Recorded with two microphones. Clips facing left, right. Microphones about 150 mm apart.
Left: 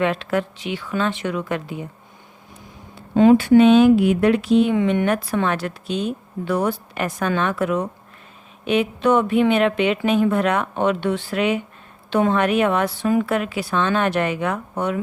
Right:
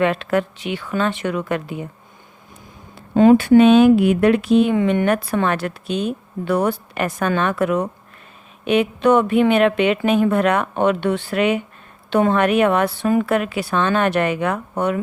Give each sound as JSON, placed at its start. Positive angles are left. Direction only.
{"t": 0.0, "sound": "speech", "side_deg": -55}
{"t": 3.2, "sound": "speech", "side_deg": -55}